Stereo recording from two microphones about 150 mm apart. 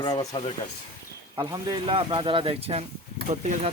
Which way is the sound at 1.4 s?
30° right (ahead or behind).